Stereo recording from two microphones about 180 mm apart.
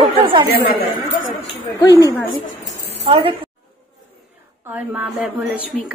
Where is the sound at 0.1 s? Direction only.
30° right (ahead or behind).